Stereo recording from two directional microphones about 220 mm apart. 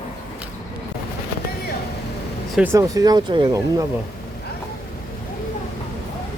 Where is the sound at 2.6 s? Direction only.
15° right (ahead or behind).